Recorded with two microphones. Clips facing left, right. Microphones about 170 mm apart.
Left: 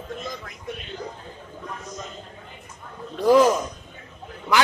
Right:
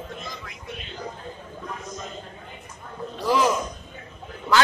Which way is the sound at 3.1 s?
50° left (ahead or behind).